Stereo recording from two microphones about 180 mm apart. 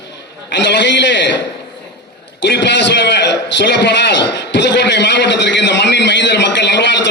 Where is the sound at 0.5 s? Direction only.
75° left (ahead or behind).